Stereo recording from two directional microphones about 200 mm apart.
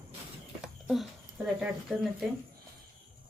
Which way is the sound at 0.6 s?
5° right (ahead or behind).